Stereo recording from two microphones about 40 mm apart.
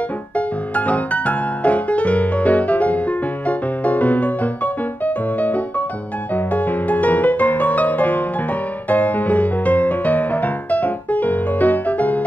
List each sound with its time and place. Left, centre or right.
0.7 s music: left